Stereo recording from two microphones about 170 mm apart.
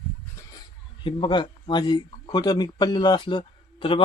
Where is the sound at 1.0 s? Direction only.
30° left (ahead or behind).